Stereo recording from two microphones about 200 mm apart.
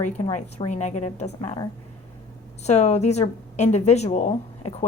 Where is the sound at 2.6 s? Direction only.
35° left (ahead or behind).